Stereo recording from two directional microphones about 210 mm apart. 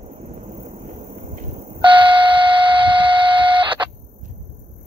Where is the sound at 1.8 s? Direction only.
25° right (ahead or behind).